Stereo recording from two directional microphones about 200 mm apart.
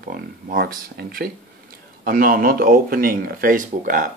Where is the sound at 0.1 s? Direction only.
50° right (ahead or behind).